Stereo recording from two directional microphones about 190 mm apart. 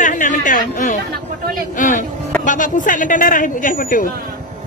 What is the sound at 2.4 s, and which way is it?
Speech, 45° left (ahead or behind).